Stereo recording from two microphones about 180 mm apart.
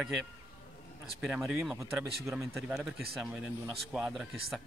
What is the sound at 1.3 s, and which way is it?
Speech, centre (ahead or behind).